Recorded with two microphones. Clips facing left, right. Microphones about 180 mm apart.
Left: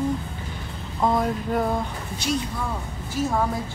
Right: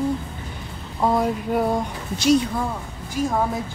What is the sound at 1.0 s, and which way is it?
Music, 5° right (ahead or behind).